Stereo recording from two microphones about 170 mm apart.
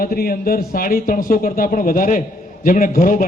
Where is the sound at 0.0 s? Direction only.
60° left (ahead or behind).